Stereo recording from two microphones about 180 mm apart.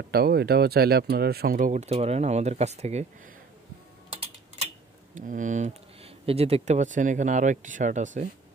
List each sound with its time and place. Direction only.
0.1 s speech: 60° right (ahead or behind); by 3.1 s 35° right (ahead or behind)
5.1 s speech: 45° right (ahead or behind)